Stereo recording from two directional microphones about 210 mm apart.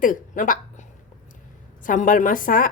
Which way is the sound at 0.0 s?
40° left (ahead or behind).